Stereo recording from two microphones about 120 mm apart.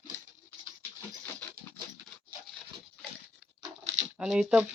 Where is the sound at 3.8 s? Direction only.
70° right (ahead or behind).